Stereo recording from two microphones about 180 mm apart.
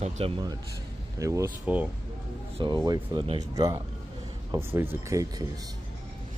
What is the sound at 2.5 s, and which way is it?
Speech, 25° right (ahead or behind).